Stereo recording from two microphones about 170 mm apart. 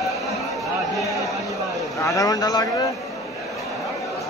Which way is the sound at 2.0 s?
20° left (ahead or behind).